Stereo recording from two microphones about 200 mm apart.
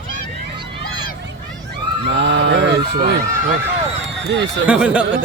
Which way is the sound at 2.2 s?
60° right (ahead or behind).